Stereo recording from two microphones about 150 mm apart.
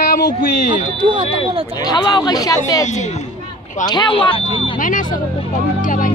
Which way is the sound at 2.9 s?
50° left (ahead or behind).